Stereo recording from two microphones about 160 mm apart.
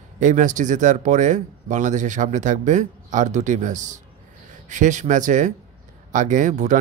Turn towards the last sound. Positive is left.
turn(degrees=-50)  # may be behind; listen again after turning